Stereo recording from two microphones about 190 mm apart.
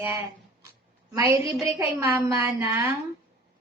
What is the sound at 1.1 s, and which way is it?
A woman's voice, 15° right (ahead or behind).